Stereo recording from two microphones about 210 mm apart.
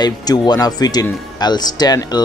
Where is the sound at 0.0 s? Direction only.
20° left (ahead or behind).